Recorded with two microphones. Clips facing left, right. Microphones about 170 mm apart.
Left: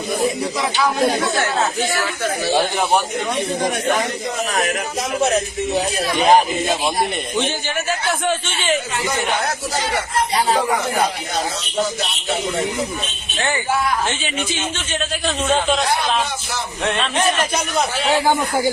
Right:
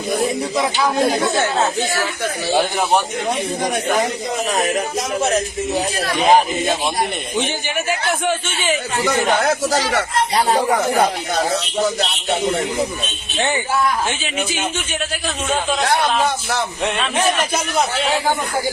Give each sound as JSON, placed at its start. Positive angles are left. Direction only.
{"t": 0.6, "sound": "speech", "side_deg": -25}
{"t": 2.5, "sound": "speech", "side_deg": 0}
{"t": 5.2, "sound": "speech", "side_deg": 0}
{"t": 7.3, "sound": "a man's voice", "side_deg": -15}
{"t": 9.4, "sound": "speech", "side_deg": -85}
{"t": 14.1, "sound": "a man's voice", "side_deg": -10}
{"t": 17.0, "sound": "speech", "side_deg": -5}